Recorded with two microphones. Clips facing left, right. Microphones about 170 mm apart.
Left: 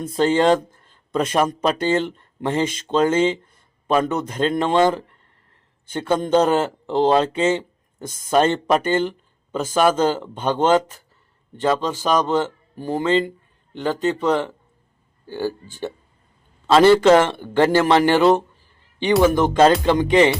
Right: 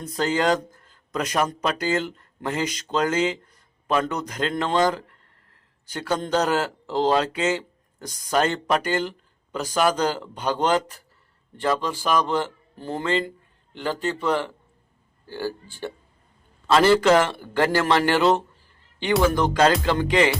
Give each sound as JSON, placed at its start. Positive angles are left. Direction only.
{"t": 0.0, "sound": "speech", "side_deg": 25}